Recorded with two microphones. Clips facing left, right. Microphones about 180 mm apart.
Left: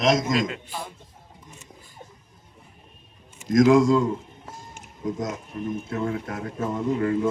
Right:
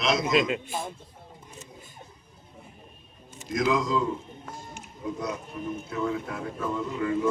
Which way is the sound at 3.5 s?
45° left (ahead or behind).